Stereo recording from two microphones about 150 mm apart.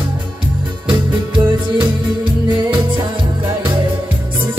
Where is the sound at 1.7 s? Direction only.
30° right (ahead or behind).